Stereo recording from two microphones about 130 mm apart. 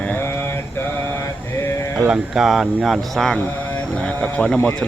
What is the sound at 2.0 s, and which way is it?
Speech, 5° right (ahead or behind).